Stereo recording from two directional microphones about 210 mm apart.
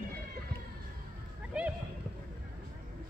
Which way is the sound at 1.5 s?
5° right (ahead or behind).